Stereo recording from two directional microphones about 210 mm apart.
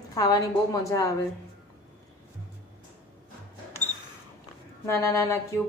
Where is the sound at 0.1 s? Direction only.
15° left (ahead or behind).